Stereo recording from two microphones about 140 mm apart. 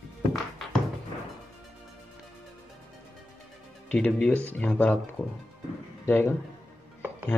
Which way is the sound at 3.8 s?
10° left (ahead or behind).